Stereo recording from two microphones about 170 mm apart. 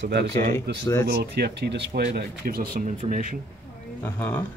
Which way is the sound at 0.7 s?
70° right (ahead or behind).